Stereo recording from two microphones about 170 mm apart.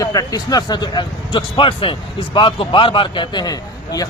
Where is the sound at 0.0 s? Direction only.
20° left (ahead or behind).